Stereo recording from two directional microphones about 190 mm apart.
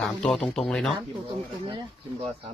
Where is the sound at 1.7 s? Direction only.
25° right (ahead or behind).